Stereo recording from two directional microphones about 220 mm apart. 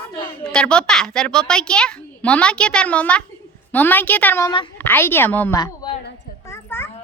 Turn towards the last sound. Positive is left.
turn(degrees=10)  # may be behind; listen again after turning